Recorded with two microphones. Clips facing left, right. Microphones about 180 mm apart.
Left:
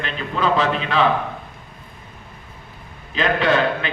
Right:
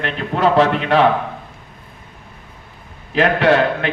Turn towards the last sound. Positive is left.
turn(degrees=-70)  # may be behind; listen again after turning